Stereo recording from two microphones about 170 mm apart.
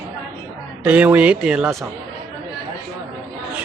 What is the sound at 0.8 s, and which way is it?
Speech, 10° right (ahead or behind).